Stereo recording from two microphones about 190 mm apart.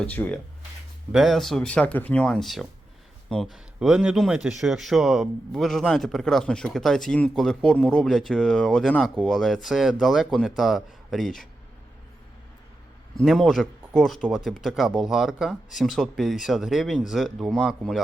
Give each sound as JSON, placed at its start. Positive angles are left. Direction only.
{"t": 0.0, "sound": "speech", "side_deg": 5}
{"t": 13.1, "sound": "speech", "side_deg": 0}